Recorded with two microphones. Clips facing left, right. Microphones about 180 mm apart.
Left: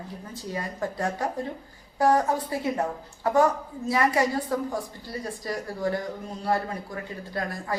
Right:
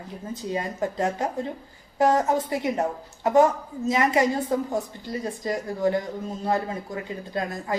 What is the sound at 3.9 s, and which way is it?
A woman's voice, 20° right (ahead or behind).